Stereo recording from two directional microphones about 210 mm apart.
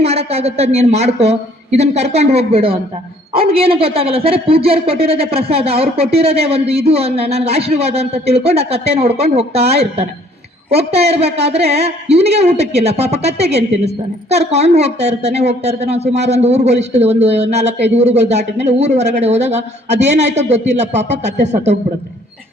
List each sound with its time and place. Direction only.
0.0 s a man's voice: 30° right (ahead or behind)